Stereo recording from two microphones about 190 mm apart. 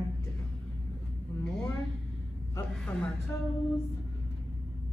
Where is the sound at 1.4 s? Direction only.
5° left (ahead or behind).